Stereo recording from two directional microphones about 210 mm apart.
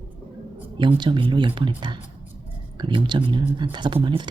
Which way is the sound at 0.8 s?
20° right (ahead or behind).